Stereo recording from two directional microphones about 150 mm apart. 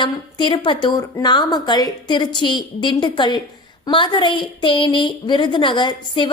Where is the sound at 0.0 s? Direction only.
30° left (ahead or behind).